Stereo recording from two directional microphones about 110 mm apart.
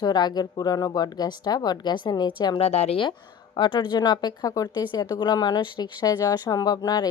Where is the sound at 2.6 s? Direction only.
75° left (ahead or behind).